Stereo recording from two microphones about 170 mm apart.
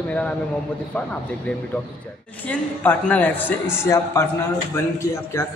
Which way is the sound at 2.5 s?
10° left (ahead or behind).